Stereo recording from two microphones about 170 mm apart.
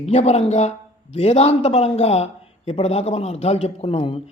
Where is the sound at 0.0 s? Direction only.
40° left (ahead or behind).